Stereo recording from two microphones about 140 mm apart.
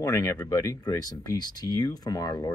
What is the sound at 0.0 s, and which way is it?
Speech, 20° left (ahead or behind).